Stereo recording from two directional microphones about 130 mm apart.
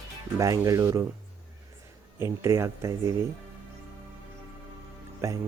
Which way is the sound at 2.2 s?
20° right (ahead or behind).